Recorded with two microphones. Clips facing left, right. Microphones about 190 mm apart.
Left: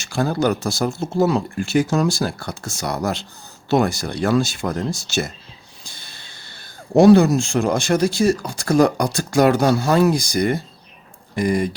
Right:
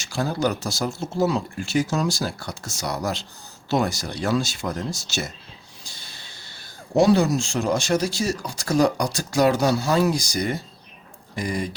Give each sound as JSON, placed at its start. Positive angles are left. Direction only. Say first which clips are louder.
{"t": 0.0, "sound": "speech", "louder": "left 4 dB", "side_deg": 55}